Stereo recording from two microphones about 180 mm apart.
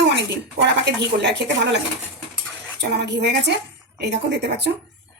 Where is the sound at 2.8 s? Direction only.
70° right (ahead or behind).